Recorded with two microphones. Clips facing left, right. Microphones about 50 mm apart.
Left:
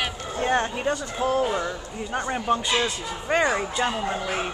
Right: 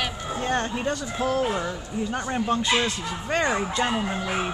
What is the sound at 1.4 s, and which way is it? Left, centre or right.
Speech, centre.